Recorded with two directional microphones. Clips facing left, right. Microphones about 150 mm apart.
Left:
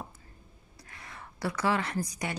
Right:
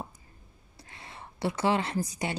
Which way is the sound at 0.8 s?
25° right (ahead or behind).